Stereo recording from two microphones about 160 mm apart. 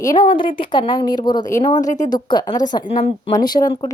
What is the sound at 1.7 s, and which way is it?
Speech, 50° left (ahead or behind).